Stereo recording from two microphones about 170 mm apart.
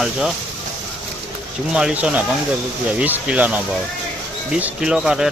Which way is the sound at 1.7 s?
5° right (ahead or behind).